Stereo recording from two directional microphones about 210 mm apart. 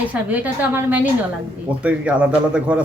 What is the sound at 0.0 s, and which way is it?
A woman's voice, 5° right (ahead or behind).